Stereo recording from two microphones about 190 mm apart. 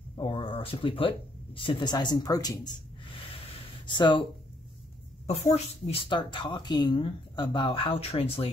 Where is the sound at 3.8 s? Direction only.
25° left (ahead or behind).